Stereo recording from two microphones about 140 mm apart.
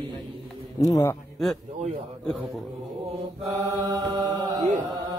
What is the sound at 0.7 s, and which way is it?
Speech, 25° left (ahead or behind).